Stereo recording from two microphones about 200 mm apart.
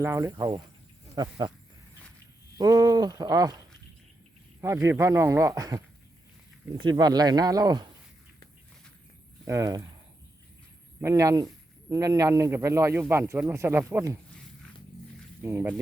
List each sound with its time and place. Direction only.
0.0 s a man's voice: 10° right (ahead or behind)
2.6 s speech: 15° right (ahead or behind)
4.6 s a man's voice: 15° right (ahead or behind)
6.8 s speech: 20° right (ahead or behind)
9.5 s a man's voice: 15° right (ahead or behind)
11.0 s a man's voice: 15° right (ahead or behind)
15.4 s a man's voice: 10° right (ahead or behind)